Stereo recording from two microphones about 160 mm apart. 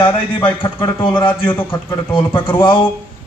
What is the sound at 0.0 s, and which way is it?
Speech, 30° left (ahead or behind).